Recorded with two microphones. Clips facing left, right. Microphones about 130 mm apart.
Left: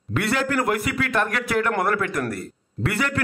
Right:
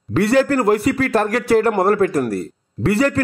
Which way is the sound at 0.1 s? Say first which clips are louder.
Right 8 dB; 30° right (ahead or behind).